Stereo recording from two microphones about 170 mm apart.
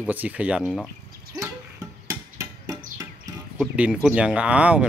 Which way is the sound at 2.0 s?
20° right (ahead or behind).